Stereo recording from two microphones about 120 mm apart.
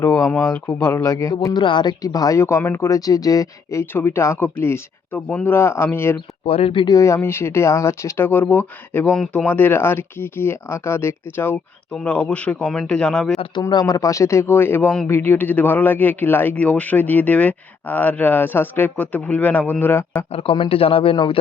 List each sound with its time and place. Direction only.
0.0 s speech: 20° left (ahead or behind)
1.5 s speech: 40° left (ahead or behind); by 6.1 s 20° left (ahead or behind)
6.4 s speech: 55° left (ahead or behind)
6.8 s speech: 30° left (ahead or behind); by 13.4 s 5° left (ahead or behind)
13.4 s speech: 40° left (ahead or behind); by 20.2 s 20° left (ahead or behind)
20.3 s a man's voice: 50° left (ahead or behind)